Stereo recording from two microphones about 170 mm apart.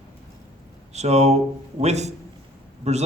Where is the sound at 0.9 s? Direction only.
40° right (ahead or behind).